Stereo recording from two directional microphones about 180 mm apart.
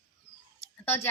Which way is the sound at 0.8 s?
10° left (ahead or behind).